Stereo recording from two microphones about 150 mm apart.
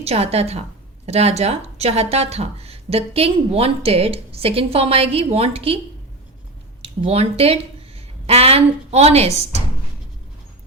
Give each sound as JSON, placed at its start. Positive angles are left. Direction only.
{"t": 0.0, "sound": "a woman's voice", "side_deg": -45}
{"t": 6.8, "sound": "a woman's voice", "side_deg": -40}